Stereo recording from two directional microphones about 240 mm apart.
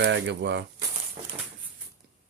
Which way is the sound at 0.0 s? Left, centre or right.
Right.